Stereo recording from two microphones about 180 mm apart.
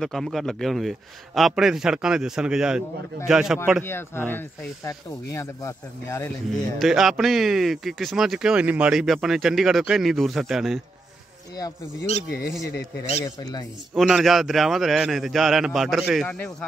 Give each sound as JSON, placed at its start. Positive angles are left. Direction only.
{"t": 0.0, "sound": "speech", "side_deg": 0}
{"t": 3.8, "sound": "speech", "side_deg": 10}
{"t": 6.8, "sound": "speech", "side_deg": 0}
{"t": 11.5, "sound": "speech", "side_deg": 20}
{"t": 12.3, "sound": "speech", "side_deg": 60}
{"t": 13.2, "sound": "speech", "side_deg": 20}
{"t": 13.9, "sound": "speech", "side_deg": 0}